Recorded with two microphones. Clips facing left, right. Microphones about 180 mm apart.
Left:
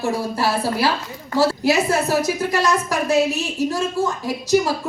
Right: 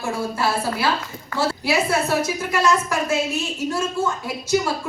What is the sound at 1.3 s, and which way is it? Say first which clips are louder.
Speech: left 4 dB; 35° left (ahead or behind).